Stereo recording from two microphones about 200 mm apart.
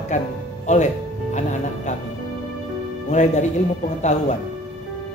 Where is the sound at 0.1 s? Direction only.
40° left (ahead or behind).